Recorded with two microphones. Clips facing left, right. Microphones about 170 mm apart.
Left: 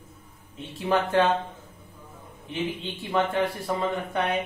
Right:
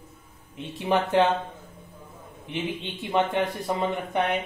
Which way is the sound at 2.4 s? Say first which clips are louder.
Even; 20° right (ahead or behind).